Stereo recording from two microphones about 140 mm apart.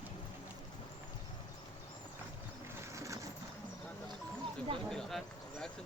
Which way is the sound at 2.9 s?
20° right (ahead or behind).